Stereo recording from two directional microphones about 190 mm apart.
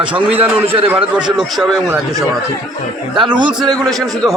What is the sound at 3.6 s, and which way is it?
Speech, centre (ahead or behind).